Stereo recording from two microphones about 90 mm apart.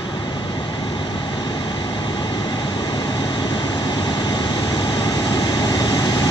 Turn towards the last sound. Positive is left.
turn(degrees=45)  # may be behind; listen again after turning